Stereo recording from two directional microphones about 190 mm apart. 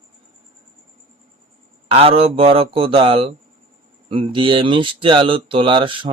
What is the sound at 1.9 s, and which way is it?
Speech, 30° right (ahead or behind).